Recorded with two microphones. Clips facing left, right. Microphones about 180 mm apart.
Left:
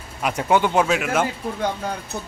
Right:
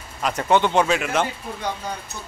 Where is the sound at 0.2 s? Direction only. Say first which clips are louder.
Even; 10° left (ahead or behind).